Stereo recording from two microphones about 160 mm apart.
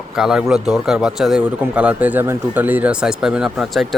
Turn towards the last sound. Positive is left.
turn(degrees=-5)  # may be behind; listen again after turning